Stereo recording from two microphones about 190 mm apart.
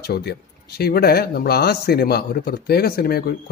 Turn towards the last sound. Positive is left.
turn(degrees=55)  # may be behind; listen again after turning